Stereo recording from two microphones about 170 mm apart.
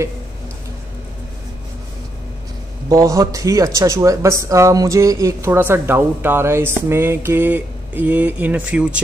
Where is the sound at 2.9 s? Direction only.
20° right (ahead or behind).